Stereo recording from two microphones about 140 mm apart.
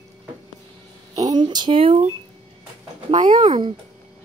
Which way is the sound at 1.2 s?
30° right (ahead or behind).